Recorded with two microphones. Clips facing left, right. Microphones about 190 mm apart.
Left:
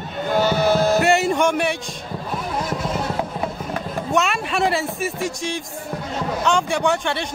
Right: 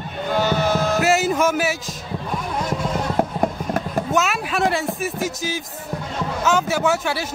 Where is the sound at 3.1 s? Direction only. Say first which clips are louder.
Right 4 dB; 45° right (ahead or behind).